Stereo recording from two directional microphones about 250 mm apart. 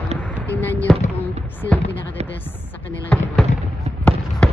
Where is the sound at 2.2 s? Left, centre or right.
Right.